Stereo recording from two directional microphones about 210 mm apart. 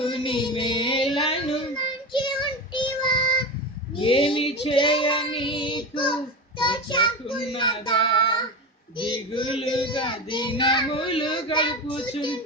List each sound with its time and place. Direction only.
0.0 s child singing: 25° left (ahead or behind)
1.1 s a sound: 30° left (ahead or behind)
2.1 s child singing: 25° left (ahead or behind)
3.9 s speech: 25° left (ahead or behind)
4.6 s child singing: 25° left (ahead or behind)